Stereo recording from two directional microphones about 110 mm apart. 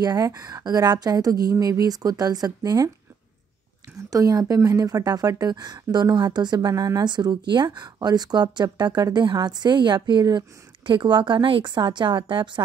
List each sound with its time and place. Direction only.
0.0 s a woman's voice: 35° right (ahead or behind)
4.1 s a woman's voice: 35° right (ahead or behind)